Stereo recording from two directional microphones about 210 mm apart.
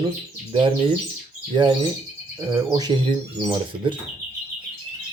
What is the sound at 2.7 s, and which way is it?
Speech, 20° right (ahead or behind).